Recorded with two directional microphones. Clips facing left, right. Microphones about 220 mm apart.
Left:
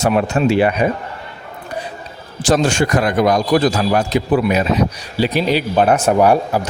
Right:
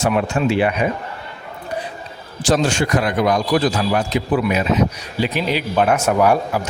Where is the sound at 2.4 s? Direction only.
50° left (ahead or behind).